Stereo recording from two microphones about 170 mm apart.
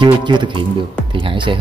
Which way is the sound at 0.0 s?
25° right (ahead or behind).